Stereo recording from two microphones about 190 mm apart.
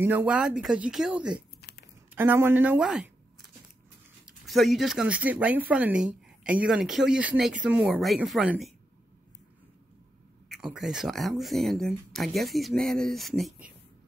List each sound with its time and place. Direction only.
0.0 s speech: 10° right (ahead or behind)
1.6 s a sound: 60° left (ahead or behind)
2.1 s speech: 10° right (ahead or behind)
4.3 s speech: centre (ahead or behind)
10.5 s speech: 5° right (ahead or behind)